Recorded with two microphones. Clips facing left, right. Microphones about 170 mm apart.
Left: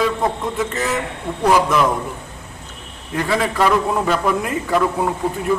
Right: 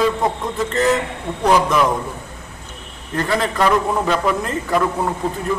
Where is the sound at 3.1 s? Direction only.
10° left (ahead or behind).